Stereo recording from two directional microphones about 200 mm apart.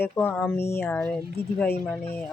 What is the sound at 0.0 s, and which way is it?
Speech, 10° left (ahead or behind).